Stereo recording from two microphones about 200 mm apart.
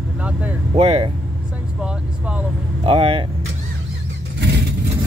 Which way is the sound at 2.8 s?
25° right (ahead or behind).